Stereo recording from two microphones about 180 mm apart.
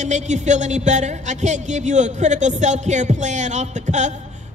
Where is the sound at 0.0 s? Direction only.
40° right (ahead or behind).